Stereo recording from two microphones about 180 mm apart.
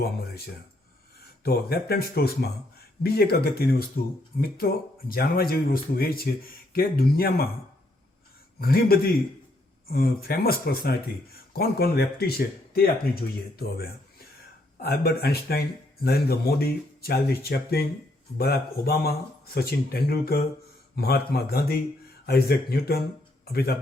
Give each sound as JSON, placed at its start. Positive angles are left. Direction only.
{"t": 1.5, "sound": "speech", "side_deg": 60}
{"t": 8.6, "sound": "speech", "side_deg": 55}